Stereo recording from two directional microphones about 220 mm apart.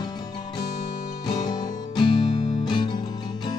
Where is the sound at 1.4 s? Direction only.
20° left (ahead or behind).